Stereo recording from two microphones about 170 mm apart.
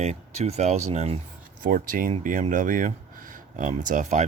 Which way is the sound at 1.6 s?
55° right (ahead or behind).